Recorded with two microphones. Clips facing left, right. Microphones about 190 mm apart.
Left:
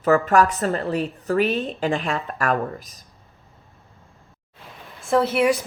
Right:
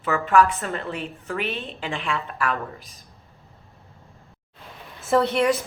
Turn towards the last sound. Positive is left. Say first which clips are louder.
# left 1 dB
turn(degrees=10)  # may be behind; listen again after turning